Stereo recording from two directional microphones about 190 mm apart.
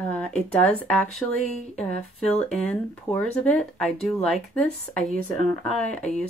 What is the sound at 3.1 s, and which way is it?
Speech, 10° left (ahead or behind).